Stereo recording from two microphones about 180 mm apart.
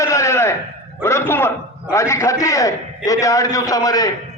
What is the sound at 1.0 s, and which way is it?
A man's voice, 15° left (ahead or behind).